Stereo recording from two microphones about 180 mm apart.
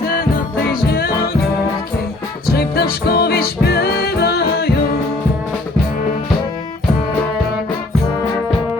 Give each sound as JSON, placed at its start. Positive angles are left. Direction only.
{"t": 0.7, "sound": "music", "side_deg": 55}
{"t": 2.5, "sound": "music", "side_deg": 60}